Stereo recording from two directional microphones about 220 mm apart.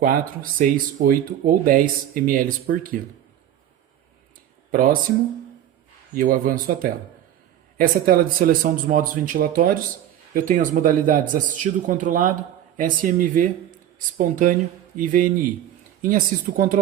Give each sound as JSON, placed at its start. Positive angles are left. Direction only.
{"t": 0.6, "sound": "speech", "side_deg": -35}
{"t": 4.7, "sound": "speech", "side_deg": -40}
{"t": 6.1, "sound": "speech", "side_deg": -40}